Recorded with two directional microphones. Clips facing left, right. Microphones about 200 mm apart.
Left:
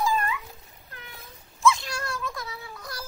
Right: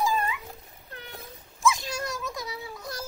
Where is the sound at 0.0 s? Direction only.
20° right (ahead or behind).